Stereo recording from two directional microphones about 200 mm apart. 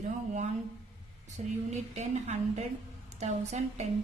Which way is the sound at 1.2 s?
35° right (ahead or behind).